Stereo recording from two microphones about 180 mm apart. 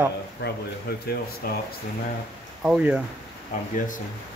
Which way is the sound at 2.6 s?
5° right (ahead or behind).